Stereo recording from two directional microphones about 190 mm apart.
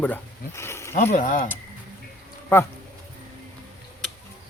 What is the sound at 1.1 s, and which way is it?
Speech, 45° left (ahead or behind).